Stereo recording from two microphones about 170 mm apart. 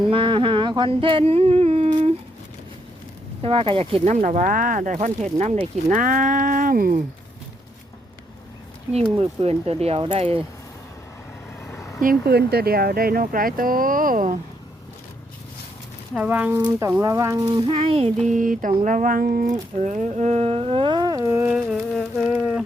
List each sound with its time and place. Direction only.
0.0 s a sound: 30° right (ahead or behind)
3.4 s speech: 30° right (ahead or behind); by 7.0 s 55° right (ahead or behind)
9.1 s speech: 35° right (ahead or behind)
11.6 s vehicle: 15° left (ahead or behind)
12.0 s speech: 70° right (ahead or behind); by 14.3 s 55° right (ahead or behind)
16.1 s speech: 10° right (ahead or behind)
16.6 s speech: 25° right (ahead or behind)
17.7 s speech: 35° right (ahead or behind)
18.3 s speech: 50° right (ahead or behind); by 21.5 s 20° right (ahead or behind)
21.5 s insect: 5° right (ahead or behind)